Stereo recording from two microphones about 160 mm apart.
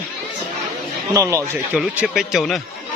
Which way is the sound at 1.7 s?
5° right (ahead or behind).